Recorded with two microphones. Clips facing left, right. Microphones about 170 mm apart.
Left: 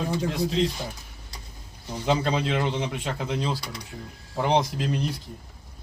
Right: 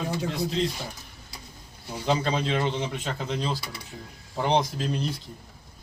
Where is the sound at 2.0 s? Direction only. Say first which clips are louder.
Left 1 dB; centre (ahead or behind).